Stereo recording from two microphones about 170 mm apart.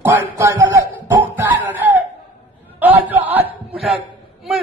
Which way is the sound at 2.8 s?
10° right (ahead or behind).